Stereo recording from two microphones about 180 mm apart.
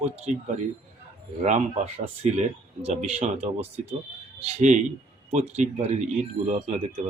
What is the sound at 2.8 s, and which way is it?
Speech, 35° right (ahead or behind).